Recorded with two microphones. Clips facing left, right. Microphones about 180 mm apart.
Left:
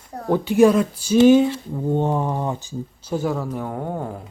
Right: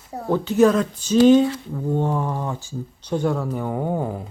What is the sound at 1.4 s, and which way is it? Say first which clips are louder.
Speech: left 1 dB; 20° left (ahead or behind).